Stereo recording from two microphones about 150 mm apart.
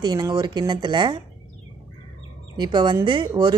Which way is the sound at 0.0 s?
30° right (ahead or behind).